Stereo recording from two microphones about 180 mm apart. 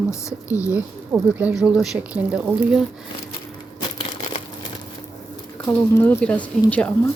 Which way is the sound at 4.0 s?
35° left (ahead or behind).